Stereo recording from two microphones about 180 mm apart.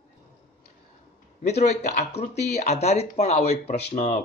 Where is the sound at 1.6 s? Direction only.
40° left (ahead or behind).